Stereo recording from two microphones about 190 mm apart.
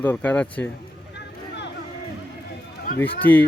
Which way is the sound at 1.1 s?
65° left (ahead or behind).